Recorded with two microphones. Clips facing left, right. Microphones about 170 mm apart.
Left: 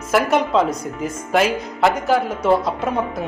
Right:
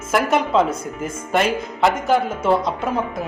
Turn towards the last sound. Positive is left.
turn(degrees=0)  # may be behind; listen again after turning